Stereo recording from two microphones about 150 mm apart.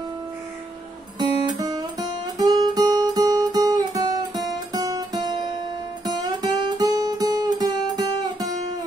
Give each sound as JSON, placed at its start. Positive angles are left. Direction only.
{"t": 1.4, "sound": "guitar", "side_deg": -25}
{"t": 6.0, "sound": "music", "side_deg": -25}